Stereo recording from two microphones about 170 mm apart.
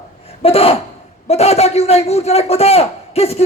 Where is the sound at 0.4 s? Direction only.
35° left (ahead or behind).